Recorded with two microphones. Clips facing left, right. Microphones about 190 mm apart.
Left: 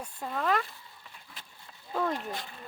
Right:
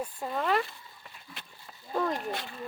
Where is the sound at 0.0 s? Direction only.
5° right (ahead or behind).